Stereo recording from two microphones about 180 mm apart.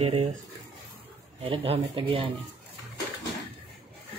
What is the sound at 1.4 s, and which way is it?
Speech, 30° right (ahead or behind).